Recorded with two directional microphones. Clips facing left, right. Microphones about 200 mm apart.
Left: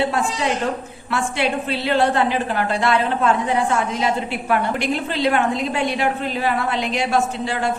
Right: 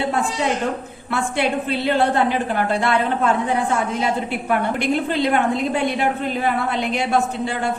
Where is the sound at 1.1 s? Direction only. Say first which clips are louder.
Right 1 dB; 50° right (ahead or behind).